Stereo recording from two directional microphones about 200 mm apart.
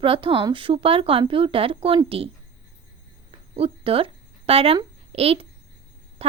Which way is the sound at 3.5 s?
30° right (ahead or behind).